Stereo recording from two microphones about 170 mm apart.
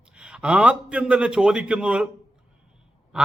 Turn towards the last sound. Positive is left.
turn(degrees=-5)  # may be behind; listen again after turning